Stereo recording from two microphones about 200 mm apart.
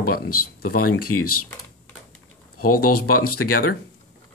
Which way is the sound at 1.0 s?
90° left.